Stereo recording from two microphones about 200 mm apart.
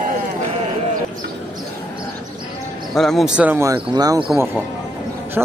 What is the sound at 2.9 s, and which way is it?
Speech, centre (ahead or behind).